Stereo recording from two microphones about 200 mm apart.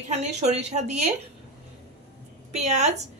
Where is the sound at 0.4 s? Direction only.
35° right (ahead or behind).